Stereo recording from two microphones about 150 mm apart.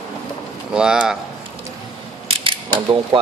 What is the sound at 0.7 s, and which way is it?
Speech, 5° right (ahead or behind).